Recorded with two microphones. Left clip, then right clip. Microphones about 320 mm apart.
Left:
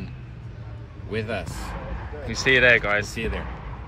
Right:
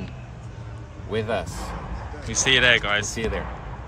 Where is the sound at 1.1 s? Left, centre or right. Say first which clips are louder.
Right 3 dB; centre.